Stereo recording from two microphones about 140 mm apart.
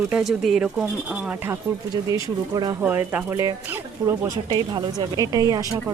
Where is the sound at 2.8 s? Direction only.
10° right (ahead or behind).